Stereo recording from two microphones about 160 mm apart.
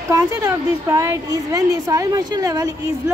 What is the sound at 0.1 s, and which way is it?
A woman's voice, 20° right (ahead or behind).